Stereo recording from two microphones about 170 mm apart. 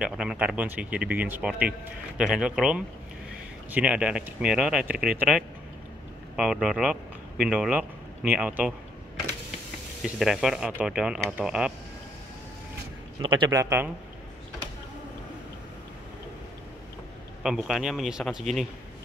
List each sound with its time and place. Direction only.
0.0 s a man's voice: 5° right (ahead or behind)
10.0 s speech: centre (ahead or behind)
13.2 s a man's voice: 30° right (ahead or behind)
17.4 s speech: 5° right (ahead or behind)